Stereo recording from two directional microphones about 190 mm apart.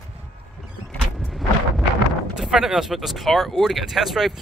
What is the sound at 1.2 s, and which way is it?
Vehicle, centre (ahead or behind).